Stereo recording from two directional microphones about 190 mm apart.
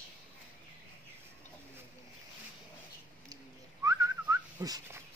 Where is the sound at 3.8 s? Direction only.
15° right (ahead or behind).